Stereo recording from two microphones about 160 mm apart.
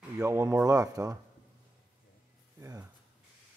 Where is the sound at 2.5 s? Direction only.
20° right (ahead or behind).